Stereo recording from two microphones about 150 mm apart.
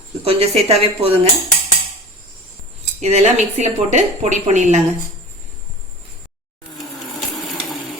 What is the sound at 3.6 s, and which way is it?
A woman's voice, 50° right (ahead or behind).